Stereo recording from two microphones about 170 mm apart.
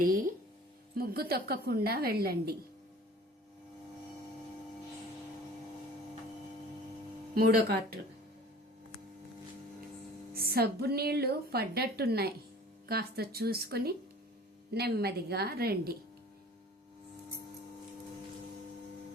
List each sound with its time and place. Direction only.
0.0 s a woman's voice: 55° right (ahead or behind)
7.3 s a woman's voice: 65° right (ahead or behind)
10.3 s a woman's voice: 65° right (ahead or behind)